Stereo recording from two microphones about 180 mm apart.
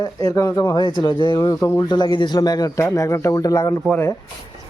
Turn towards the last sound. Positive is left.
turn(degrees=15)  # may be behind; listen again after turning